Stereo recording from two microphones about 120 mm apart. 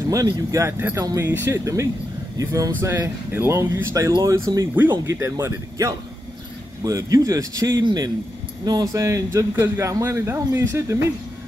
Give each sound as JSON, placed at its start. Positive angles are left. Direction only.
{"t": 0.1, "sound": "speech", "side_deg": -30}